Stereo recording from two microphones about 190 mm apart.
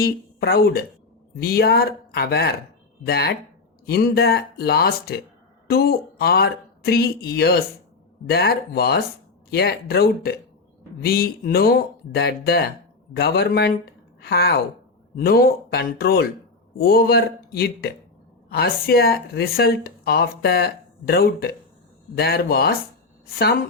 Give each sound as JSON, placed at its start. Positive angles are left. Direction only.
{"t": 0.0, "sound": "a woman's voice", "side_deg": 55}